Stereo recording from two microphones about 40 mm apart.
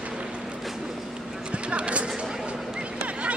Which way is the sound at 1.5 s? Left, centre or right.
Right.